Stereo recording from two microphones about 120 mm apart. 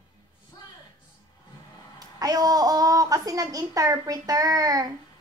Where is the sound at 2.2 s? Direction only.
30° right (ahead or behind).